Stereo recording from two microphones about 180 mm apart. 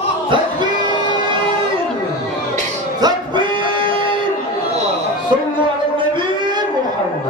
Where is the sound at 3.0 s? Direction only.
25° right (ahead or behind).